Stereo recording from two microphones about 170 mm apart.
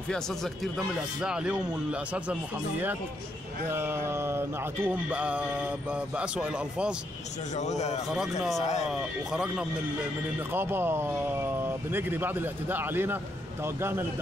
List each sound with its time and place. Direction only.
0.1 s speech: centre (ahead or behind)
3.7 s speech: 15° right (ahead or behind)
7.5 s a man's voice: 40° left (ahead or behind)
8.1 s speech: centre (ahead or behind)
8.5 s a man's voice: 40° left (ahead or behind)
8.9 s speech: 5° right (ahead or behind)